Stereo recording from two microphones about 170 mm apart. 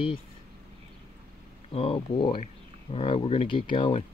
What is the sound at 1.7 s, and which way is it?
Speech, 35° left (ahead or behind).